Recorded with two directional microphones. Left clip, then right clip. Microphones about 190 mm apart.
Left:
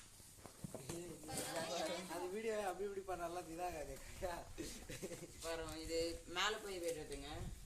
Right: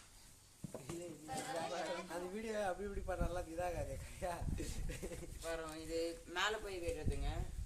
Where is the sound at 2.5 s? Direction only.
55° right (ahead or behind); by 4.9 s 40° right (ahead or behind).